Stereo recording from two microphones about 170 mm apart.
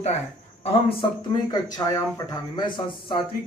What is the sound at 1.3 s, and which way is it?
A man's voice, 25° left (ahead or behind).